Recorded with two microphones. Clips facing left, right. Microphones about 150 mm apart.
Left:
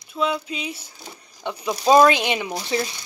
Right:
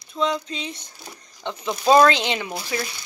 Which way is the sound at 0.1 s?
5° left (ahead or behind).